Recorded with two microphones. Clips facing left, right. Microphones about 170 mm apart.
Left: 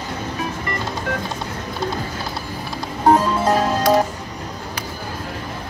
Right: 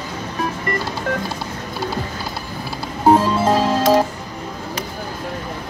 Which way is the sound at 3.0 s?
10° right (ahead or behind).